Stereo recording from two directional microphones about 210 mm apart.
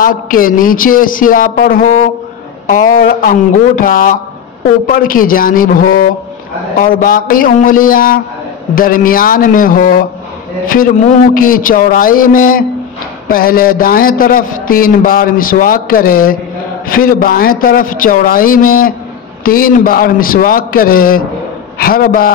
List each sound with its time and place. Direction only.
0.0 s a man's voice: 40° left (ahead or behind)